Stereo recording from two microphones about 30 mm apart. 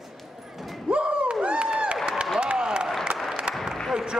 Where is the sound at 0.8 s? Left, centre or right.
Right.